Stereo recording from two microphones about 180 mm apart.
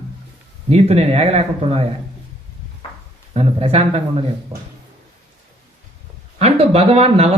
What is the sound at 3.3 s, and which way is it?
Speech, 35° right (ahead or behind).